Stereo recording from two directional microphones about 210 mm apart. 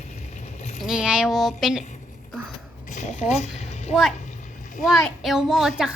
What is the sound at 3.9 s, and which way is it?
Speech, centre (ahead or behind).